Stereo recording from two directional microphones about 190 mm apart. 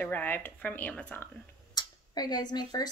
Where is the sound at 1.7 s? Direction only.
20° left (ahead or behind).